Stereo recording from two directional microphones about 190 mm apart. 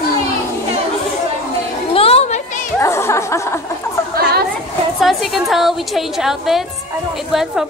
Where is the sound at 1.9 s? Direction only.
30° left (ahead or behind).